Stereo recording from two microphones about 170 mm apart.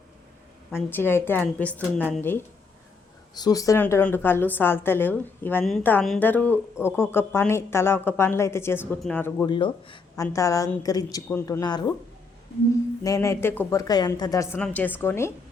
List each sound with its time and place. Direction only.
0.7 s a woman's voice: 10° left (ahead or behind)
3.3 s a woman's voice: 20° left (ahead or behind)
9.5 s speech: 30° left (ahead or behind)
10.3 s a woman's voice: 20° left (ahead or behind)
13.0 s a woman's voice: 20° left (ahead or behind)